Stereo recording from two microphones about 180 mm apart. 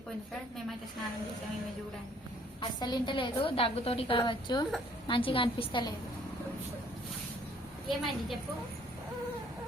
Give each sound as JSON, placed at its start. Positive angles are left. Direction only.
{"t": 2.6, "sound": "a woman's voice", "side_deg": 25}
{"t": 7.9, "sound": "a woman's voice", "side_deg": 0}